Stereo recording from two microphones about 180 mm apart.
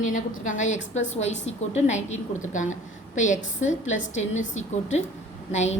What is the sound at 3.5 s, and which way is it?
Speech, 90° left.